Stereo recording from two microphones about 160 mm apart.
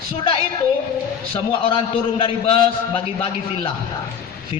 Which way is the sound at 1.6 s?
30° left (ahead or behind).